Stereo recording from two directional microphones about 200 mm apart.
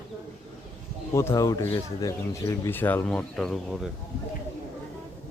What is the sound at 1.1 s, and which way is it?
Speech, 15° left (ahead or behind).